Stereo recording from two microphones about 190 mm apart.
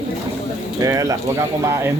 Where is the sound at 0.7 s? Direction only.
15° right (ahead or behind).